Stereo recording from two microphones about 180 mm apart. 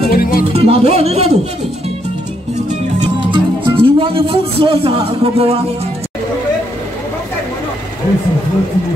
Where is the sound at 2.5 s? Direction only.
40° right (ahead or behind).